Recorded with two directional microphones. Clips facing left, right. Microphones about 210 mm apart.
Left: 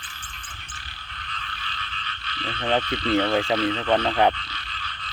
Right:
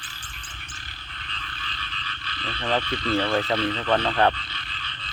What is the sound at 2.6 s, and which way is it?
Frog, 20° left (ahead or behind).